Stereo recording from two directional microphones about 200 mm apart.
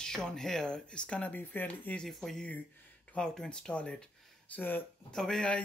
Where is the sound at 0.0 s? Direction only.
5° left (ahead or behind).